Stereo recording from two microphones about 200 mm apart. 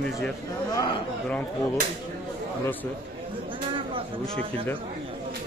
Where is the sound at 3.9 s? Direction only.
30° right (ahead or behind).